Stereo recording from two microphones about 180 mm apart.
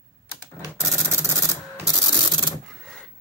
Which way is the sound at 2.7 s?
Centre (ahead or behind).